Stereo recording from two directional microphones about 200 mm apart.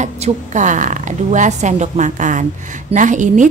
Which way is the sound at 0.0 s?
35° right (ahead or behind).